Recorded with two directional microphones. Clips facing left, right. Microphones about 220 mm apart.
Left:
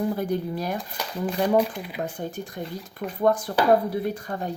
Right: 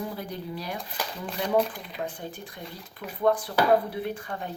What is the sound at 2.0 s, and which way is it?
Speech, 45° left (ahead or behind).